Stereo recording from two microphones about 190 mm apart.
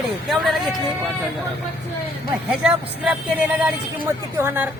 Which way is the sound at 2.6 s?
5° right (ahead or behind).